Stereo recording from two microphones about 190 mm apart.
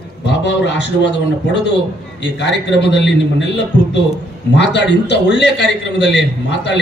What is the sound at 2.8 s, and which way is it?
Speech, 65° left (ahead or behind).